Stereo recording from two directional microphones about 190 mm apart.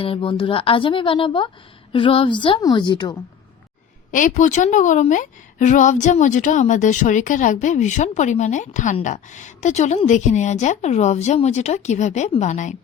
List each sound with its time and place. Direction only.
0.0 s a woman's voice: 30° left (ahead or behind)
4.1 s a woman's voice: 45° left (ahead or behind)